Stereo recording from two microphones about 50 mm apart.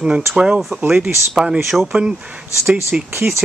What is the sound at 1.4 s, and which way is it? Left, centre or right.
Speech, centre.